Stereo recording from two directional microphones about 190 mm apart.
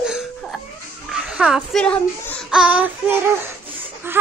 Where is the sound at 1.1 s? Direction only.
5° right (ahead or behind).